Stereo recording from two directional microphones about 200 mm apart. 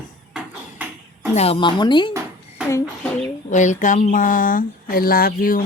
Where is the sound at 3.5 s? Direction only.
40° left (ahead or behind).